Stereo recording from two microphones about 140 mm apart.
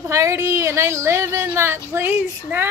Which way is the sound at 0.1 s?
20° right (ahead or behind).